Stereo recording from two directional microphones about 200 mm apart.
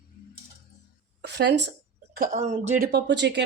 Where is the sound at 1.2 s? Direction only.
60° right (ahead or behind).